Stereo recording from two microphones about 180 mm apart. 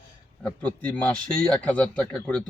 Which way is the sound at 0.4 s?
10° left (ahead or behind).